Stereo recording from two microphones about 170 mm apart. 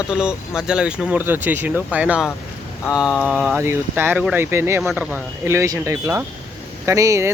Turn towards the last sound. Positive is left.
turn(degrees=-15)  # may be behind; listen again after turning